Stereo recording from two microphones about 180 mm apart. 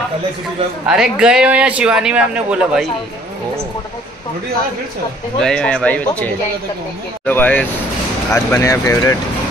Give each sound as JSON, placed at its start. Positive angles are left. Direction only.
{"t": 0.8, "sound": "a man's voice", "side_deg": -5}
{"t": 5.4, "sound": "a man's voice", "side_deg": 5}